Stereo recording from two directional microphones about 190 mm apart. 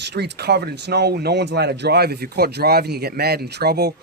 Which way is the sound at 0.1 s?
60° right (ahead or behind).